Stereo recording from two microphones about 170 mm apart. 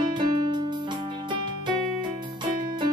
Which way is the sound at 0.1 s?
25° right (ahead or behind).